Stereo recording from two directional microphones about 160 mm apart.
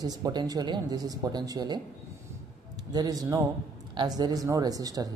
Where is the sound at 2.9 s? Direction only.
25° right (ahead or behind).